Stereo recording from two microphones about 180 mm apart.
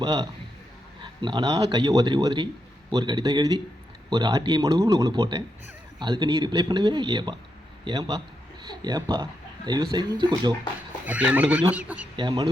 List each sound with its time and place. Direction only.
0.0 s speech: 20° right (ahead or behind)
11.0 s speech: 5° right (ahead or behind)
12.1 s speech: 25° right (ahead or behind)